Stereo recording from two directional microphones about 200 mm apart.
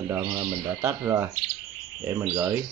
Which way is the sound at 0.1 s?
20° right (ahead or behind).